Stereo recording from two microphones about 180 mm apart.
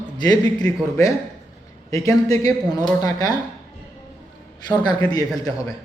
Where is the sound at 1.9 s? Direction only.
20° left (ahead or behind).